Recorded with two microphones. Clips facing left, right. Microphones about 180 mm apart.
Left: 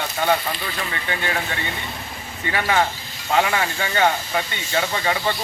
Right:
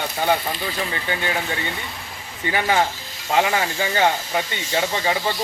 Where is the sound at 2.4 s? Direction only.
25° right (ahead or behind).